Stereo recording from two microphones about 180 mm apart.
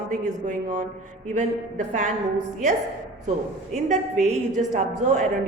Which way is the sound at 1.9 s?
45° right (ahead or behind).